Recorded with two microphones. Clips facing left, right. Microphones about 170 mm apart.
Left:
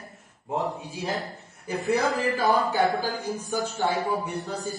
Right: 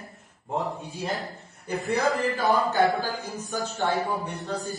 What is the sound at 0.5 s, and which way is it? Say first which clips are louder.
A man's voice: left 1 dB; centre (ahead or behind).